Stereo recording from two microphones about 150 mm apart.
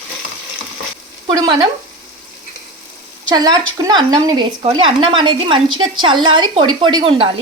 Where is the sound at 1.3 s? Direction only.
25° right (ahead or behind).